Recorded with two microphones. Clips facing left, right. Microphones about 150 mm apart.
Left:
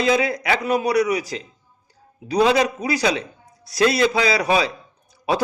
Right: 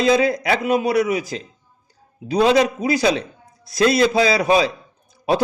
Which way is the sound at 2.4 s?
25° right (ahead or behind).